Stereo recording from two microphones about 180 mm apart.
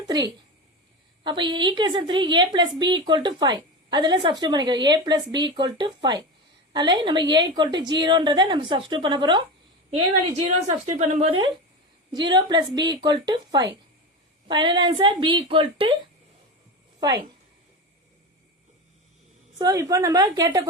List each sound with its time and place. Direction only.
1.2 s a woman's voice: 25° right (ahead or behind)
9.9 s a woman's voice: 40° right (ahead or behind)
12.1 s a woman's voice: 25° right (ahead or behind)
19.5 s a woman's voice: 20° right (ahead or behind)